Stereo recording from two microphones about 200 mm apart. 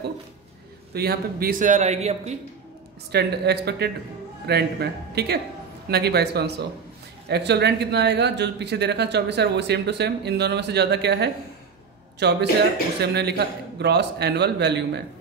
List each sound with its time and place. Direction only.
0.9 s a man's voice: 50° right (ahead or behind); by 2.3 s 35° right (ahead or behind)
3.1 s speech: 55° right (ahead or behind)